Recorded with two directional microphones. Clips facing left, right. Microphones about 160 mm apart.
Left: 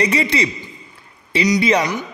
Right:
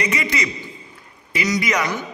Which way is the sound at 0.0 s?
30° left (ahead or behind).